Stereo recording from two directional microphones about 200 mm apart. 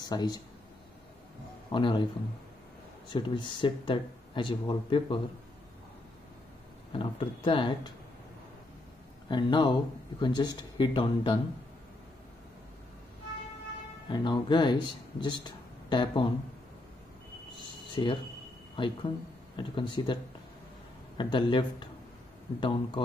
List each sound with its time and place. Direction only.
0.0 s speech: 20° left (ahead or behind)
1.7 s speech: 25° left (ahead or behind)
3.1 s speech: 20° left (ahead or behind)
6.9 s speech: 25° left (ahead or behind)
9.3 s speech: 25° left (ahead or behind)
14.0 s speech: 20° left (ahead or behind)
18.0 s speech: 25° left (ahead or behind)
21.2 s speech: 25° left (ahead or behind)